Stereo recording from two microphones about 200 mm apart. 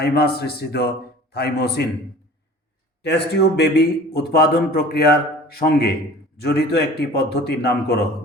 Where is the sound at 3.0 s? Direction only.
55° left (ahead or behind).